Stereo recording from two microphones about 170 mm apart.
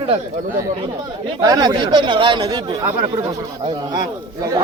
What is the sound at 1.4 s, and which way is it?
Speech, 25° right (ahead or behind).